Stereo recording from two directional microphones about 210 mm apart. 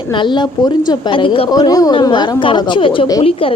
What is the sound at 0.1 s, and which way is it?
A woman's voice, 20° left (ahead or behind).